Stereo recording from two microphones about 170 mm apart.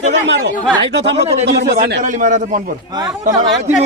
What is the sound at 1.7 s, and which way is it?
Speech, 65° right (ahead or behind).